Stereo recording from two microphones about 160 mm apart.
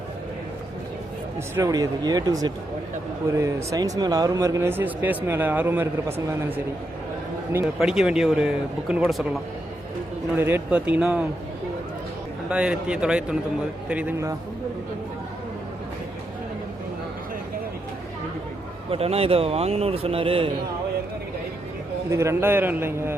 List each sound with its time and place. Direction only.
1.5 s speech: 20° right (ahead or behind)
7.8 s speech: 5° right (ahead or behind)
10.3 s speech: 15° right (ahead or behind)
12.5 s speech: 5° right (ahead or behind)
18.9 s speech: 40° right (ahead or behind)
22.1 s speech: 15° right (ahead or behind)